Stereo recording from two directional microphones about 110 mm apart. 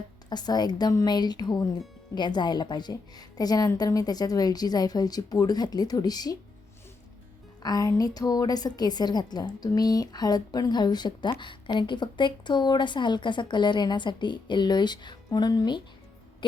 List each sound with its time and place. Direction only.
0.3 s a woman's voice: 40° left (ahead or behind)
7.6 s a woman's voice: 35° left (ahead or behind)
16.4 s a sound: 45° left (ahead or behind)